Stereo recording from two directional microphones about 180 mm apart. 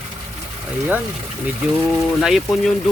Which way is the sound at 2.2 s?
Centre (ahead or behind).